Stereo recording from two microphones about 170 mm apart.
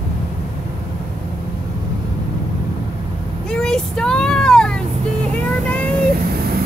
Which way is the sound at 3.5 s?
5° left (ahead or behind).